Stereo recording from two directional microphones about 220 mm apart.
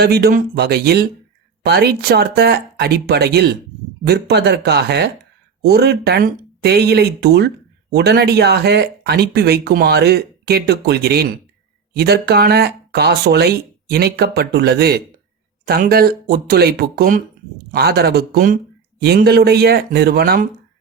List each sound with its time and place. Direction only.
0.0 s speech: 45° right (ahead or behind)